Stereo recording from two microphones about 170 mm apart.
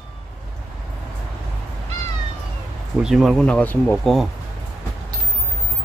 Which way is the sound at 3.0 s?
Centre (ahead or behind).